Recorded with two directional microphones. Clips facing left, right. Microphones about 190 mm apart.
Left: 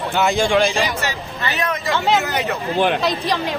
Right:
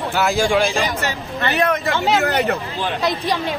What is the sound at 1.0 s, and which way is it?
Speech, 55° right (ahead or behind).